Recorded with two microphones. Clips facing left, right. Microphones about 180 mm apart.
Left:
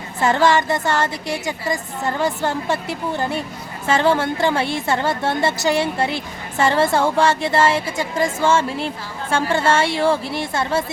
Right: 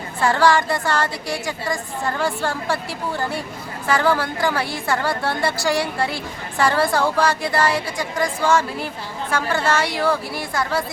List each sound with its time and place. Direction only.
0.2 s a woman's voice: 20° left (ahead or behind)